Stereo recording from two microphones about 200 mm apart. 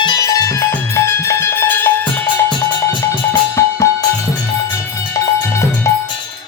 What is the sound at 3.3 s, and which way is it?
Music, 15° left (ahead or behind).